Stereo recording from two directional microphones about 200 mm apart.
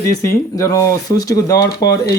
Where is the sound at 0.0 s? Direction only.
15° left (ahead or behind).